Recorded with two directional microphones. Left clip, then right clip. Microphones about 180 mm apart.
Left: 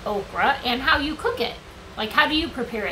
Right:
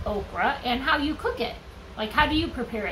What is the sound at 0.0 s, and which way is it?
A woman's voice, 10° left (ahead or behind).